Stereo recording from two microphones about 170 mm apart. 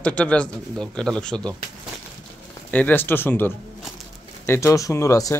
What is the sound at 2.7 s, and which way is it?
Speech, 10° left (ahead or behind).